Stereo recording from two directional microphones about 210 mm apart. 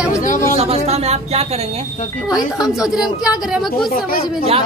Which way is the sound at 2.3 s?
5° right (ahead or behind).